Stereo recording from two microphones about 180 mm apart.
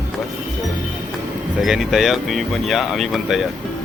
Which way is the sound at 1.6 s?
Centre (ahead or behind).